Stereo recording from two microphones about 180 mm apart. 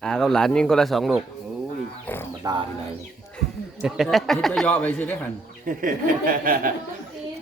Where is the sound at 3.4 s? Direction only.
Centre (ahead or behind).